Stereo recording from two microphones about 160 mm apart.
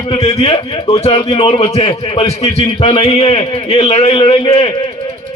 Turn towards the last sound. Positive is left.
turn(degrees=35)  # may be behind; listen again after turning